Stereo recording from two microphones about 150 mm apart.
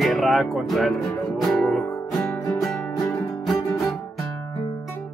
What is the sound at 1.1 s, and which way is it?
Music, centre (ahead or behind).